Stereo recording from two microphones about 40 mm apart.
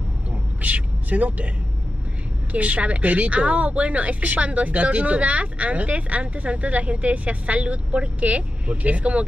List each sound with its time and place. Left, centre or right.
0.6 s a man's voice: right
2.5 s a woman's voice: right